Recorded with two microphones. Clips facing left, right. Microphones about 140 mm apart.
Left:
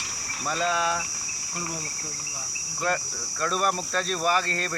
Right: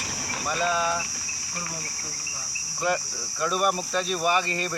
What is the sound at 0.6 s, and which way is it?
Mains hum, 5° right (ahead or behind).